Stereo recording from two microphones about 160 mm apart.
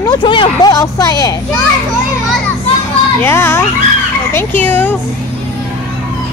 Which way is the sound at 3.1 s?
15° left (ahead or behind).